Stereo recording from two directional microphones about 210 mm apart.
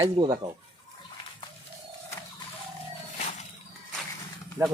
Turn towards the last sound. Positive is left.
turn(degrees=-5)  # may be behind; listen again after turning